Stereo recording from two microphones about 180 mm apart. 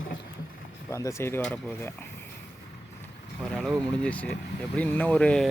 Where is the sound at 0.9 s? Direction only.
15° left (ahead or behind).